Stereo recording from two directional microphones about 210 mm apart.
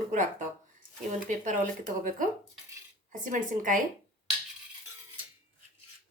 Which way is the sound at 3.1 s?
40° right (ahead or behind).